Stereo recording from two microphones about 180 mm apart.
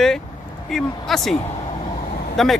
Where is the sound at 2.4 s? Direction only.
Centre (ahead or behind).